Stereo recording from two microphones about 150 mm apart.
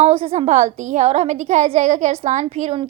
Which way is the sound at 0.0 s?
40° right (ahead or behind).